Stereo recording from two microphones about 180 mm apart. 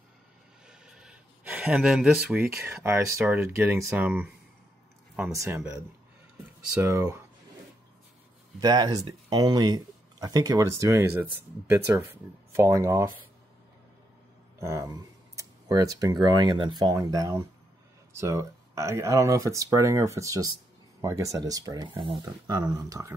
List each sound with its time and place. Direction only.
0.7 s speech: 5° right (ahead or behind)
6.8 s speech: 15° right (ahead or behind)
8.5 s speech: 20° right (ahead or behind)
14.6 s speech: 15° right (ahead or behind)